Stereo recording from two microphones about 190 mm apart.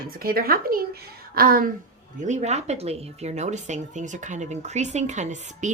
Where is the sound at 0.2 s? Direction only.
50° right (ahead or behind).